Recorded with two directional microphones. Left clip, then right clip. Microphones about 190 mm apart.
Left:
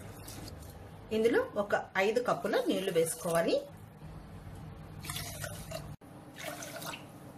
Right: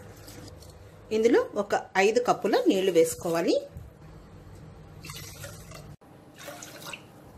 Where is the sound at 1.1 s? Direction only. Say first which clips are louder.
Right 6 dB; 30° right (ahead or behind).